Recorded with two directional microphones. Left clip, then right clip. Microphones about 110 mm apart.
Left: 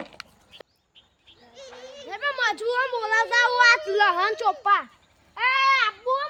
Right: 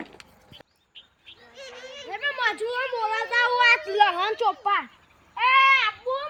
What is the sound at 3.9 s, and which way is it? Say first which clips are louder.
Speech: even; 35° left (ahead or behind).